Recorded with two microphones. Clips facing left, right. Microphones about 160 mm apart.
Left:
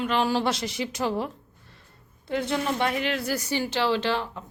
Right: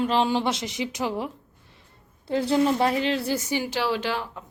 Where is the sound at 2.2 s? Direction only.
30° right (ahead or behind).